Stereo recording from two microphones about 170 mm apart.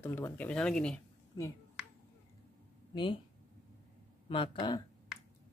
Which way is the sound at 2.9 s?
30° left (ahead or behind).